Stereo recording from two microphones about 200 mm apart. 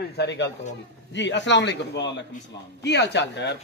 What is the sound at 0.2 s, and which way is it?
A man's voice, 60° left (ahead or behind).